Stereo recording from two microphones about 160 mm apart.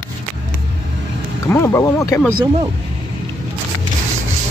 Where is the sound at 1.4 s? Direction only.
15° left (ahead or behind).